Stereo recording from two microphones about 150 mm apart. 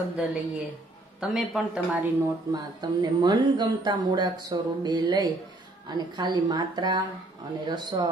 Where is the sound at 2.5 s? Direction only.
25° right (ahead or behind).